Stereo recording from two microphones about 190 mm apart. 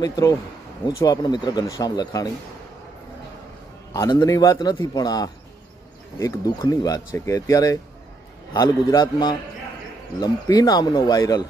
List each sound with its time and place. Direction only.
0.0 s a man's voice: 20° left (ahead or behind)
3.9 s a man's voice: 20° left (ahead or behind)